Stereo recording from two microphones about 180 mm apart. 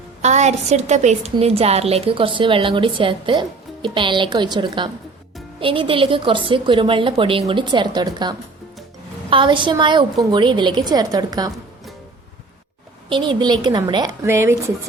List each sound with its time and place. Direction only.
0.2 s a woman's voice: 40° right (ahead or behind); by 11.5 s 20° right (ahead or behind)
13.1 s a woman's voice: 25° right (ahead or behind)